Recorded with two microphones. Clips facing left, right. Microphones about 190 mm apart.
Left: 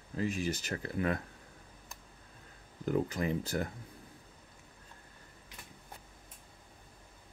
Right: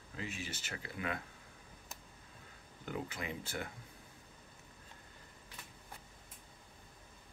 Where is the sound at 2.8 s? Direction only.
40° left (ahead or behind).